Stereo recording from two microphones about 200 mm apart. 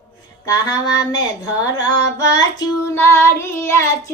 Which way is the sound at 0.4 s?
20° left (ahead or behind).